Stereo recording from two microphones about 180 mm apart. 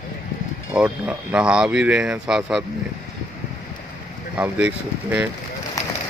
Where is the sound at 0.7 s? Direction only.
5° right (ahead or behind).